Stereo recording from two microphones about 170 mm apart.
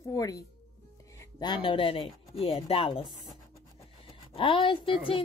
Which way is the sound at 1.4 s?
30° left (ahead or behind).